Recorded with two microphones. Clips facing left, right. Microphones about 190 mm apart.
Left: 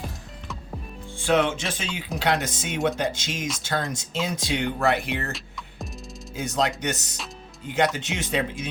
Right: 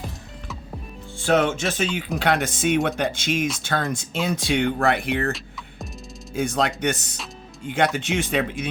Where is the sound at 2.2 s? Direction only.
55° right (ahead or behind).